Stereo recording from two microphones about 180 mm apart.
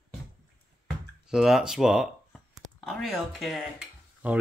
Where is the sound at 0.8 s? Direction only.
5° right (ahead or behind).